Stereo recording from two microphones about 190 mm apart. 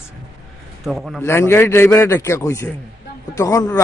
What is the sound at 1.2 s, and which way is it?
A man's voice, 15° left (ahead or behind).